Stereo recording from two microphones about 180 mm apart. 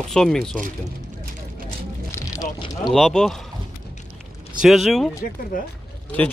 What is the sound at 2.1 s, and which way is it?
Vehicle, 20° left (ahead or behind).